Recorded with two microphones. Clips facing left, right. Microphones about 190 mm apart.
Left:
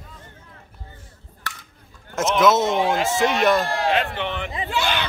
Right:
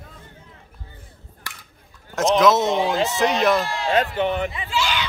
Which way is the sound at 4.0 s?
40° right (ahead or behind).